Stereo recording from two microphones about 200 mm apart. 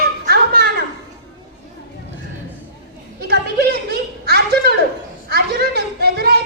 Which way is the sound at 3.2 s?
55° right (ahead or behind).